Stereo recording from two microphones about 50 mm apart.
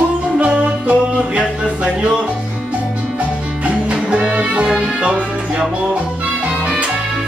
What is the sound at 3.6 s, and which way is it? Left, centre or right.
Music, right.